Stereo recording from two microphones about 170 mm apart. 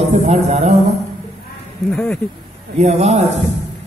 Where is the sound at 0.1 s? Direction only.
40° right (ahead or behind).